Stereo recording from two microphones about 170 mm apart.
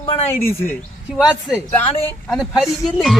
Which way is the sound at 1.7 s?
10° left (ahead or behind).